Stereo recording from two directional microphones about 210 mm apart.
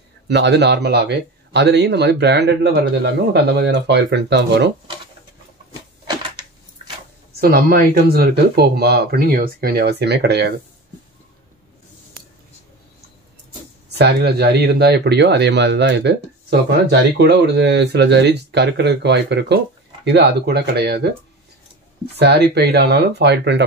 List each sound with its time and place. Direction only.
0.3 s a man's voice: 55° right (ahead or behind)
7.3 s speech: 45° right (ahead or behind)
13.9 s speech: 50° right (ahead or behind)
22.1 s speech: 50° right (ahead or behind)